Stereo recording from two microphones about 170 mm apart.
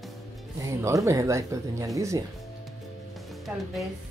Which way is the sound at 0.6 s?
15° right (ahead or behind).